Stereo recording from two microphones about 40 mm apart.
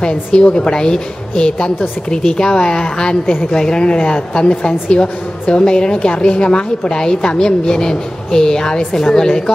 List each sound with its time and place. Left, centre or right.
0.0 s a woman's voice: left